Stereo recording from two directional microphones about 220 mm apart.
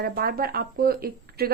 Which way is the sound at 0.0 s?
40° right (ahead or behind).